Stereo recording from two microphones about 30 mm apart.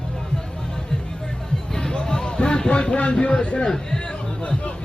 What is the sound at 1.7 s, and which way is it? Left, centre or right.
Music, centre.